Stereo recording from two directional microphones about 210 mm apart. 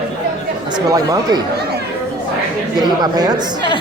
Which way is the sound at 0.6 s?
20° right (ahead or behind).